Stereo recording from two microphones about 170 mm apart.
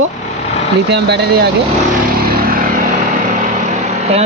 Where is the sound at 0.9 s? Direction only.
80° right.